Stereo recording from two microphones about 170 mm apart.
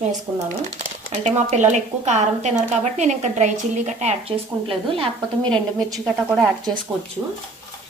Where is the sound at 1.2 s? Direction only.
45° right (ahead or behind).